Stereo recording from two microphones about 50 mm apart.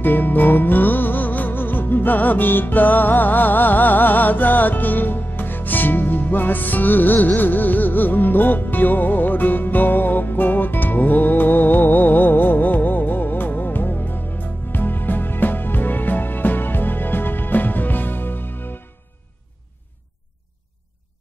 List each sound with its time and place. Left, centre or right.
0.0 s music: left